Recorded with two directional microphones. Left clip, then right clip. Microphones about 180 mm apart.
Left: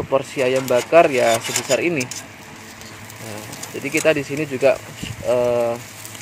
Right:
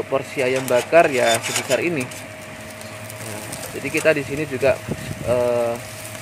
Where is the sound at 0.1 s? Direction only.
15° left (ahead or behind).